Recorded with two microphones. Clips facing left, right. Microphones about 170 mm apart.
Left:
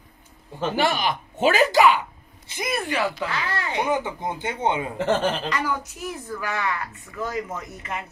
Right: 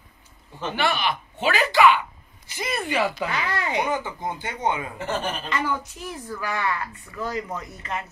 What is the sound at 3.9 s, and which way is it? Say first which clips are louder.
Speech: left 2 dB; 20° left (ahead or behind).